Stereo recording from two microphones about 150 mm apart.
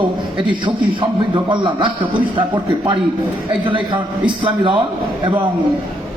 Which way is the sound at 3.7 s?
35° right (ahead or behind).